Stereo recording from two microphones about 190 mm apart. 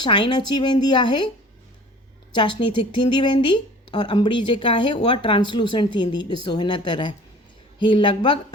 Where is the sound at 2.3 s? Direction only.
25° left (ahead or behind).